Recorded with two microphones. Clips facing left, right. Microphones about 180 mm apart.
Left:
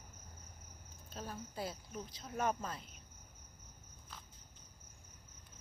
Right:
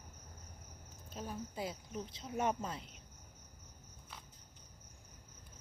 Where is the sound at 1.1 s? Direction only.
15° right (ahead or behind).